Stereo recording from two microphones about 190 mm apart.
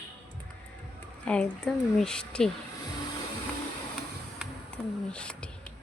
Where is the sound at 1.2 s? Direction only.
5° left (ahead or behind).